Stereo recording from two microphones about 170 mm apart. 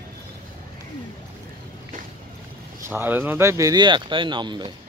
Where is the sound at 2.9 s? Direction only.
10° right (ahead or behind); by 4.7 s 25° right (ahead or behind).